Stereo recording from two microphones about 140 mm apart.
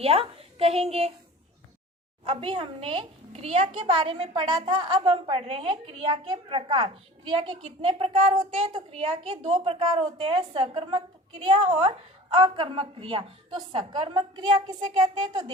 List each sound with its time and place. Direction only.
0.0 s a woman's voice: 45° right (ahead or behind)
2.2 s a woman's voice: 40° right (ahead or behind)